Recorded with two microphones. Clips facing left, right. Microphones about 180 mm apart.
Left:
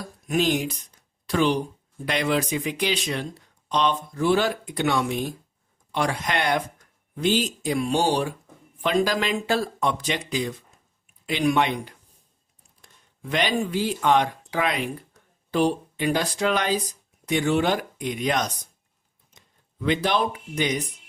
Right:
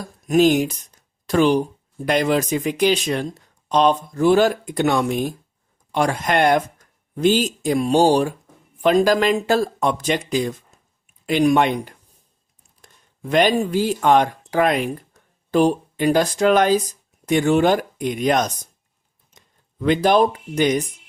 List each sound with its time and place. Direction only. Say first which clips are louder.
0.3 s speech: right 8 dB; 45° right (ahead or behind)
19.8 s speech: right 7 dB; 45° right (ahead or behind)